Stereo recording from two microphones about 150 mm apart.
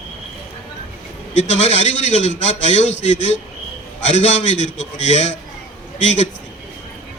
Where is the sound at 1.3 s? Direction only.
50° left (ahead or behind).